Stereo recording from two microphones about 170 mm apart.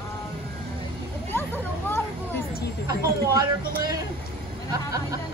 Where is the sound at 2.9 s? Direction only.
20° right (ahead or behind).